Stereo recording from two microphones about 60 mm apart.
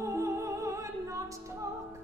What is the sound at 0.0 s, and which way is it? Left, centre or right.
Music, right.